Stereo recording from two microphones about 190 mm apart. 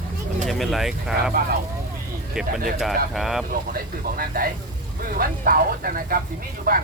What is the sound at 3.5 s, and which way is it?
Speech, 50° right (ahead or behind).